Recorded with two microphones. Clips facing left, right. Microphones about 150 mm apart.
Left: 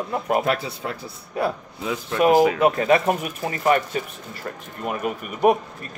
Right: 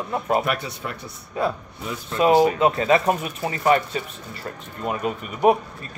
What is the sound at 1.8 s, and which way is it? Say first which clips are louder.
Speech: left 1 dB; 90° left.